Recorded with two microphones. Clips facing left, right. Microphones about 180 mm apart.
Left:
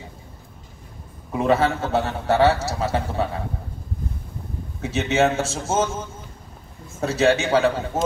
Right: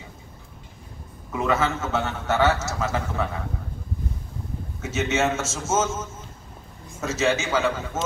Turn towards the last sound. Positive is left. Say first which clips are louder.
# left 5 dB
turn(degrees=35)  # may be behind; listen again after turning